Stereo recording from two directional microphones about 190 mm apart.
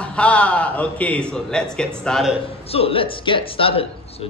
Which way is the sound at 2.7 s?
30° left (ahead or behind).